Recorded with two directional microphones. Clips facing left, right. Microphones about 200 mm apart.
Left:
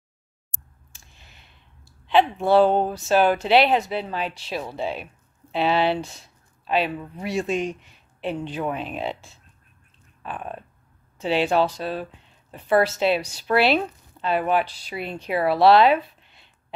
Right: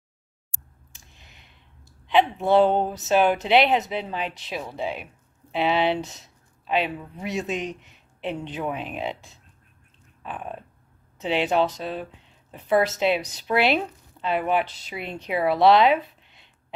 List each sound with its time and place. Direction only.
0.9 s a sound: 20° right (ahead or behind)
2.0 s speech: 20° right (ahead or behind)
11.1 s speech: 20° right (ahead or behind)